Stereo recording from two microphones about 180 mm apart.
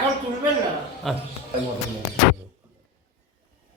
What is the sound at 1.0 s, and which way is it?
Speech, centre (ahead or behind).